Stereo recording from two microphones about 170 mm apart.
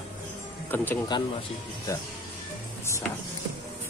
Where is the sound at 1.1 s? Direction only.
25° left (ahead or behind).